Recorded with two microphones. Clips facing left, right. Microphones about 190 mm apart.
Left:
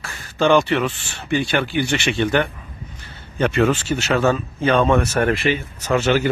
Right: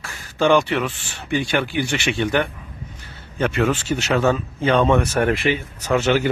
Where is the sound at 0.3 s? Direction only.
10° right (ahead or behind).